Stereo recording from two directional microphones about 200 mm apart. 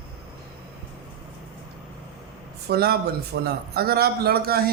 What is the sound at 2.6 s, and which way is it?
A man's voice, 50° right (ahead or behind).